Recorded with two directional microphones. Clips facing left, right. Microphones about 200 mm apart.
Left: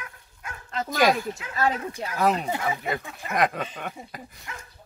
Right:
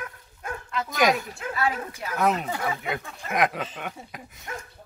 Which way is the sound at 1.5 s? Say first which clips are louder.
Left 2 dB; 40° left (ahead or behind).